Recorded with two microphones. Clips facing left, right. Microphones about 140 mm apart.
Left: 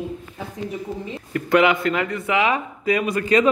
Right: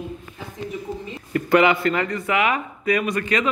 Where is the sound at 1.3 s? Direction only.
Centre (ahead or behind).